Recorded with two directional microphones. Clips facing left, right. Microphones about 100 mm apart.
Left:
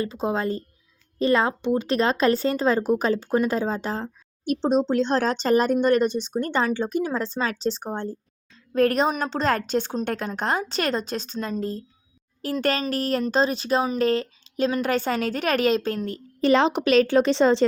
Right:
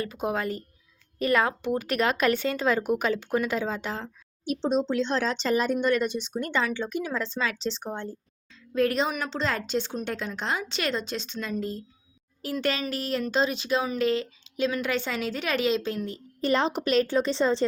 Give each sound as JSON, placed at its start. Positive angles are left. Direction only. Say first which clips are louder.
{"t": 0.0, "sound": "a woman's voice", "louder": "left 4 dB", "side_deg": 25}
{"t": 16.4, "sound": "a woman's voice", "louder": "left 6 dB", "side_deg": 90}